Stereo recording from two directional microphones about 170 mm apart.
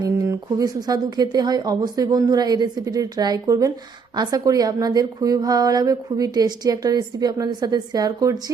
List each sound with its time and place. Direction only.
0.0 s a woman's voice: 20° right (ahead or behind)